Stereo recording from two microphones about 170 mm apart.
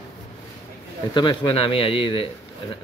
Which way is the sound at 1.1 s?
25° left (ahead or behind).